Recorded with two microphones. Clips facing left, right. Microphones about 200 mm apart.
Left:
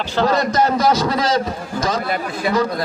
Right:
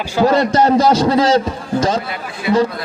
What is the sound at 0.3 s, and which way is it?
A man's voice, 30° right (ahead or behind).